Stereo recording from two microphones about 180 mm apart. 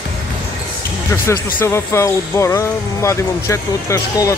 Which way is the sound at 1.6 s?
15° left (ahead or behind).